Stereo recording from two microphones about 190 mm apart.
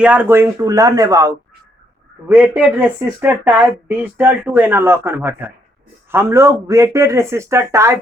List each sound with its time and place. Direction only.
0.0 s speech: 10° right (ahead or behind)